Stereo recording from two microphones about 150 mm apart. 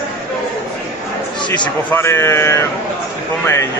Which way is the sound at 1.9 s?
15° left (ahead or behind).